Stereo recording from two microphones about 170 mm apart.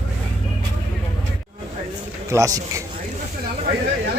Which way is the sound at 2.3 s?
20° right (ahead or behind).